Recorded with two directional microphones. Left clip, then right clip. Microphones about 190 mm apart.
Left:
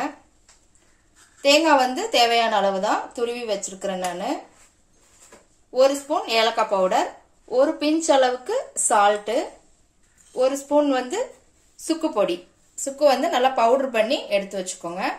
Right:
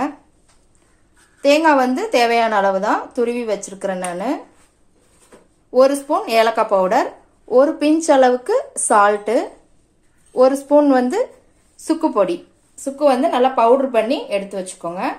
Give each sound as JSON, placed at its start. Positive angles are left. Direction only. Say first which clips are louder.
{"t": 1.4, "sound": "speech", "louder": "right 3 dB", "side_deg": -25}
{"t": 6.0, "sound": "a woman's voice", "louder": "right 5 dB", "side_deg": -40}
{"t": 10.3, "sound": "a woman's voice", "louder": "right 7 dB", "side_deg": -30}